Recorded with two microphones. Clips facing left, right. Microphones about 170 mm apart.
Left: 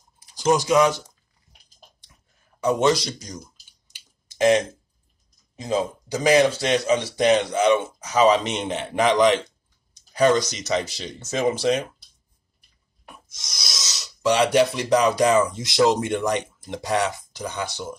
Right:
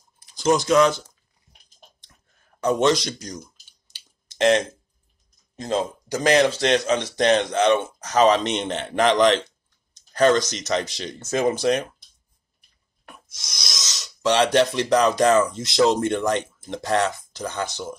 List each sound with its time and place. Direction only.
0.3 s speech: 10° left (ahead or behind)
2.6 s speech: 10° left (ahead or behind)
3.9 s a sound: 10° left (ahead or behind)
5.6 s speech: 10° left (ahead or behind)
13.0 s speech: centre (ahead or behind)